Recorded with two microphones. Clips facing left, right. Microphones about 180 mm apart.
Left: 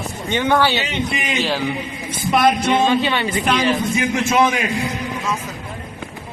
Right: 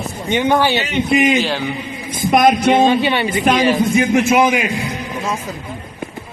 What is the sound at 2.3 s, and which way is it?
Music, 45° right (ahead or behind).